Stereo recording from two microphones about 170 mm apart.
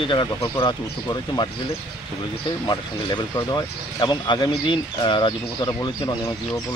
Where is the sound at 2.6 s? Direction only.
25° left (ahead or behind).